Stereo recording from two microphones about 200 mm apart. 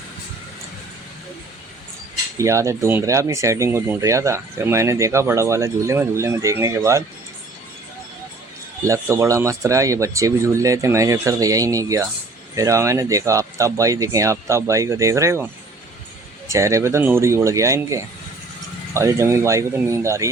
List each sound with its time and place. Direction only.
2.4 s speech: 15° right (ahead or behind)
8.9 s speech: 15° right (ahead or behind)
16.5 s speech: 15° right (ahead or behind)